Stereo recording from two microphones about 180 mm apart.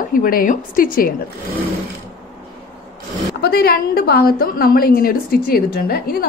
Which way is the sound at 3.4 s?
60° left (ahead or behind).